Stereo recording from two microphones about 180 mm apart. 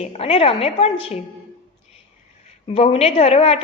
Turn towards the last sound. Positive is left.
turn(degrees=35)  # may be behind; listen again after turning